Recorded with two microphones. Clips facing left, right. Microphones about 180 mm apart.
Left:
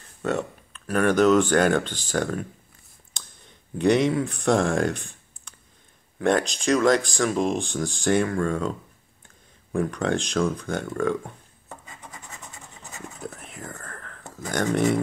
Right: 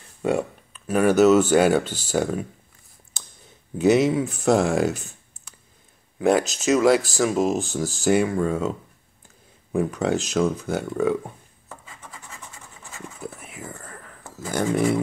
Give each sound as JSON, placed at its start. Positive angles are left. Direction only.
{"t": 0.2, "sound": "speech", "side_deg": -10}
{"t": 3.1, "sound": "clicking", "side_deg": -5}
{"t": 3.7, "sound": "speech", "side_deg": -5}
{"t": 12.0, "sound": "scratch", "side_deg": 20}
{"t": 13.2, "sound": "whispering", "side_deg": -5}